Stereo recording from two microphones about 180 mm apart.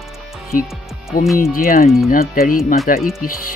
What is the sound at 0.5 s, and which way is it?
Speech, 50° left (ahead or behind).